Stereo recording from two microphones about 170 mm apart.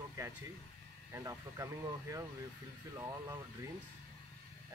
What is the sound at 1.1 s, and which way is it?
Speech, 20° right (ahead or behind).